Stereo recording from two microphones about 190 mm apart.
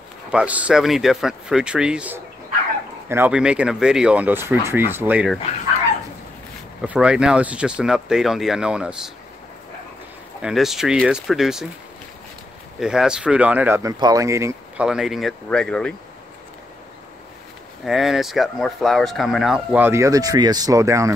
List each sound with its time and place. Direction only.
0.3 s speech: 5° right (ahead or behind)
6.8 s speech: 5° right (ahead or behind)
10.4 s speech: centre (ahead or behind)
12.8 s speech: 5° right (ahead or behind)
14.9 s speech: centre (ahead or behind)
17.8 s speech: centre (ahead or behind)